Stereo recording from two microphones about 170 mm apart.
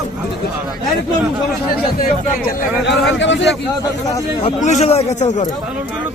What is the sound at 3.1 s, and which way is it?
Speech, 90° left.